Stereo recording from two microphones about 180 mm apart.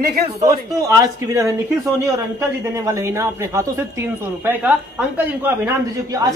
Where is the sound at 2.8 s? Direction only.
15° right (ahead or behind).